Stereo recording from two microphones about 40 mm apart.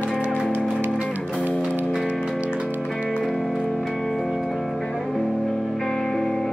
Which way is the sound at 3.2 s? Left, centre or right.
Centre.